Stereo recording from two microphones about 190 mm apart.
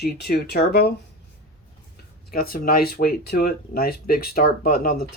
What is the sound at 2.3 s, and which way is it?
Speech, 50° left (ahead or behind).